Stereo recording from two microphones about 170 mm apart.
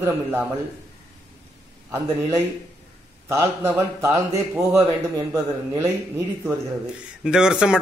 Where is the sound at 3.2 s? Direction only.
15° right (ahead or behind).